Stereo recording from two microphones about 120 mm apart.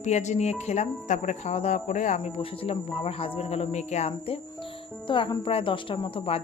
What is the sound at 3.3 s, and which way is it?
Music, 60° left (ahead or behind).